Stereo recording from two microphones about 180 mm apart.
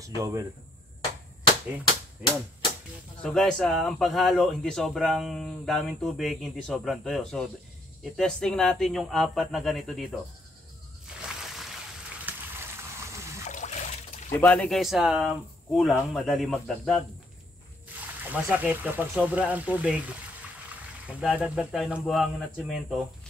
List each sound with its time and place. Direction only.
0.0 s speech: 20° right (ahead or behind)
2.2 s speech: 5° right (ahead or behind)
3.2 s speech: 5° left (ahead or behind)
12.3 s a sound: 10° right (ahead or behind)
13.5 s water: 40° left (ahead or behind)
14.4 s speech: 5° left (ahead or behind)
18.2 s speech: 10° right (ahead or behind)